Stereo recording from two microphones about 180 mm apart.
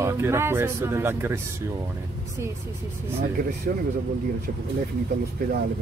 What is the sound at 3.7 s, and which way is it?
Speech, 55° right (ahead or behind).